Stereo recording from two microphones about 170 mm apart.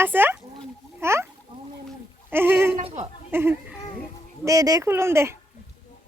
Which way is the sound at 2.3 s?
15° right (ahead or behind).